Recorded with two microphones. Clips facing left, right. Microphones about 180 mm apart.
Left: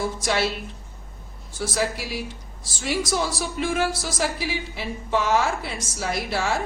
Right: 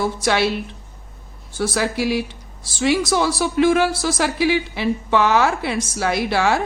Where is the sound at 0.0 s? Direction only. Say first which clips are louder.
Right 5 dB; 70° right (ahead or behind).